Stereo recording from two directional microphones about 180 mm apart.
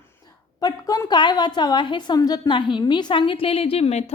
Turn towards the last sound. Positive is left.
turn(degrees=35)  # may be behind; listen again after turning